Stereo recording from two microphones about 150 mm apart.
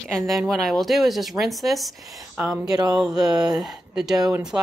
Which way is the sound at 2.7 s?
25° right (ahead or behind).